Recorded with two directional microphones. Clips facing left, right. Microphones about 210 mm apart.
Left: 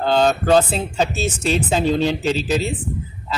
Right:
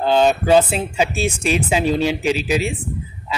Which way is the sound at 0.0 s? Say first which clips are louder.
Right 1 dB; 10° right (ahead or behind).